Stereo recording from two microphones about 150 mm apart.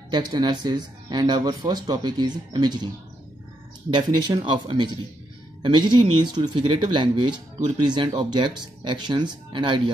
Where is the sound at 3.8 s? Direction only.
30° right (ahead or behind).